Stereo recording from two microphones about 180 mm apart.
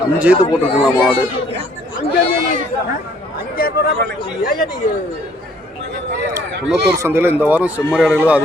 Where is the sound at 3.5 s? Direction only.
55° left (ahead or behind).